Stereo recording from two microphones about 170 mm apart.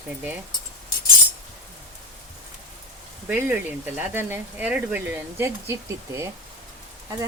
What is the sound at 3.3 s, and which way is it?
Speech, 10° right (ahead or behind).